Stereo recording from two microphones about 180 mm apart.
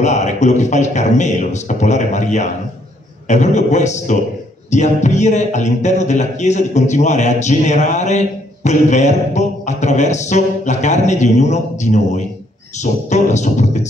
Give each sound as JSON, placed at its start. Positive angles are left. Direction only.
{"t": 0.0, "sound": "a man's voice", "side_deg": 40}